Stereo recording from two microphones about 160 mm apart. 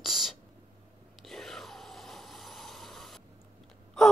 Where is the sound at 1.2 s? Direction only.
Centre (ahead or behind).